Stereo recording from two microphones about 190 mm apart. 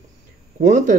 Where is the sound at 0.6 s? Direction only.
40° right (ahead or behind).